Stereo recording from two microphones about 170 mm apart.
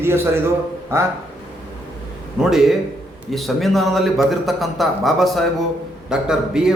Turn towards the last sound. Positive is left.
turn(degrees=-5)  # may be behind; listen again after turning